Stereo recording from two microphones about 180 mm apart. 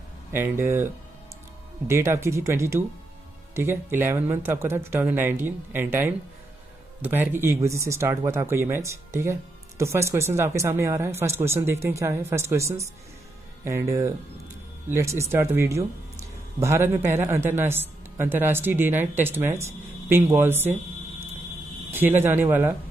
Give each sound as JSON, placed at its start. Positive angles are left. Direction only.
{"t": 0.3, "sound": "speech", "side_deg": -15}
{"t": 1.9, "sound": "speech", "side_deg": -15}
{"t": 21.9, "sound": "speech", "side_deg": -10}